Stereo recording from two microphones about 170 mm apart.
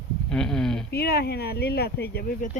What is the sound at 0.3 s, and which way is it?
Speech, 5° left (ahead or behind).